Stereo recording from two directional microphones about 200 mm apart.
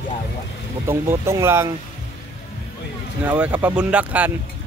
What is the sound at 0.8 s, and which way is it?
Speech, 15° right (ahead or behind).